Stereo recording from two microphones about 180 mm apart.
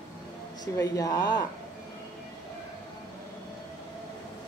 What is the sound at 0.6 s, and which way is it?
Speech, 20° left (ahead or behind).